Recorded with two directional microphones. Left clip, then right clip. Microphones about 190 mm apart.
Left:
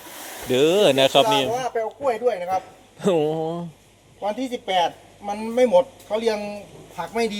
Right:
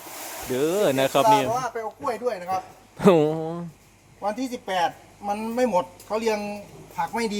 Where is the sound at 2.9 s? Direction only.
25° right (ahead or behind).